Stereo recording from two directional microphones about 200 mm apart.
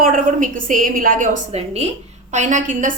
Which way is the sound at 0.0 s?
40° right (ahead or behind).